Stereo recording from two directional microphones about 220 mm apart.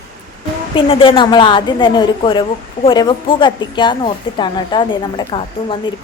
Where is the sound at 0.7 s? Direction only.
25° left (ahead or behind).